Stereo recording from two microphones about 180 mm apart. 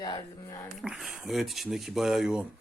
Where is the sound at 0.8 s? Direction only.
Centre (ahead or behind).